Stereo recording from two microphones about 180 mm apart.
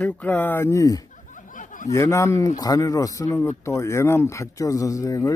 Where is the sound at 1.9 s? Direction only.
15° left (ahead or behind).